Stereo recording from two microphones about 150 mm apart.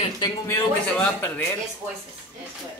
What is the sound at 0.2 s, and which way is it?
Speech, 20° left (ahead or behind).